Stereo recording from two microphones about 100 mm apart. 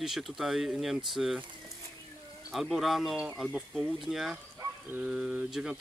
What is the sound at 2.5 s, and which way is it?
Speech, centre (ahead or behind).